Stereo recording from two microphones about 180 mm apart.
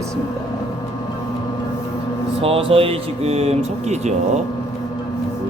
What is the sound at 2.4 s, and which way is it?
Speech, 30° right (ahead or behind).